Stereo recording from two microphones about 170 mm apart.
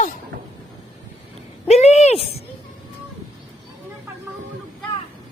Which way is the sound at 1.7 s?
40° left (ahead or behind).